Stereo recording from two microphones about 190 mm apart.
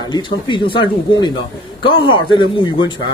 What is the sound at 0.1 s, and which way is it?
A man's voice, 25° left (ahead or behind).